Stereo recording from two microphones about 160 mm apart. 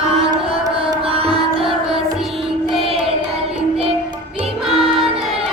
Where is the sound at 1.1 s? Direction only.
35° right (ahead or behind).